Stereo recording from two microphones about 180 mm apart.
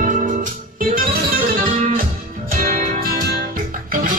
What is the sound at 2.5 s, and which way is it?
Music, 50° right (ahead or behind).